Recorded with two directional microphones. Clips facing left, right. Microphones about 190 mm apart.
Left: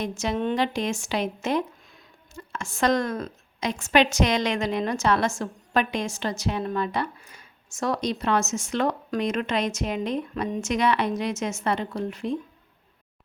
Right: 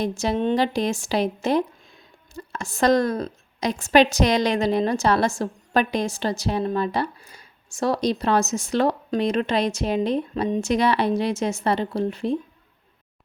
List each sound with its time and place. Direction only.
0.0 s a woman's voice: 35° right (ahead or behind)